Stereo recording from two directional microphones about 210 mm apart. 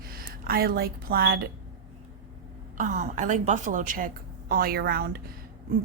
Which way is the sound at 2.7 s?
35° right (ahead or behind).